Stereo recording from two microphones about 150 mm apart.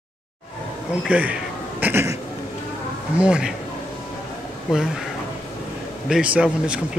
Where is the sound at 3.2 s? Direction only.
5° right (ahead or behind).